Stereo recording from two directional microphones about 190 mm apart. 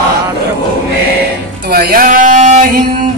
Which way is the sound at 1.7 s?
50° right (ahead or behind).